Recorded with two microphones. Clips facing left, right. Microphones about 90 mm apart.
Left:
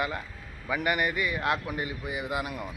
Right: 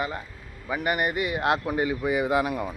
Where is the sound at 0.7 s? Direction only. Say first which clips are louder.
Right 2 dB; 40° right (ahead or behind).